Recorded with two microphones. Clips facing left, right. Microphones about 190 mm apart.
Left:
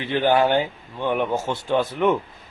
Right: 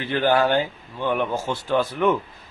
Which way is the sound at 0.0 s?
20° left (ahead or behind).